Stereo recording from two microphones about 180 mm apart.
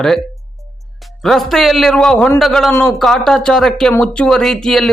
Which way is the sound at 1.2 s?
Centre (ahead or behind).